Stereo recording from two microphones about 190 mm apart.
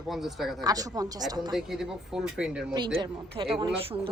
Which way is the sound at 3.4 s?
30° right (ahead or behind).